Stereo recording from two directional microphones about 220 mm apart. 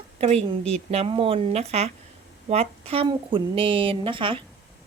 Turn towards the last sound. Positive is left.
turn(degrees=-25)  # may be behind; listen again after turning